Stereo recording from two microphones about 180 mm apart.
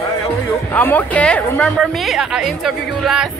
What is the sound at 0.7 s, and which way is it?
A woman's voice, 10° left (ahead or behind).